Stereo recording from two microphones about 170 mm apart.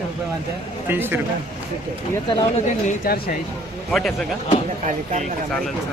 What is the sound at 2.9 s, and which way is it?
Speech, 55° left (ahead or behind).